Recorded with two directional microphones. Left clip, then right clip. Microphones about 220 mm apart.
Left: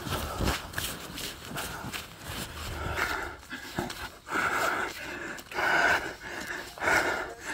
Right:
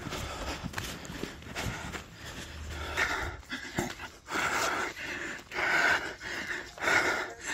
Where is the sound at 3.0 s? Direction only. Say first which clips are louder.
Right 1 dB; 15° right (ahead or behind).